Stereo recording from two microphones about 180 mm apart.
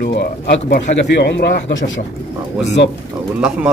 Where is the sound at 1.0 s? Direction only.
75° left (ahead or behind).